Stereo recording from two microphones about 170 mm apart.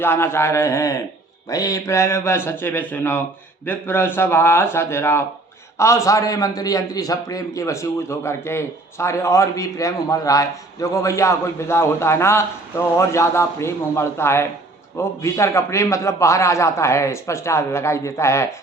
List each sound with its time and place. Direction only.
0.0 s a man's voice: 15° left (ahead or behind)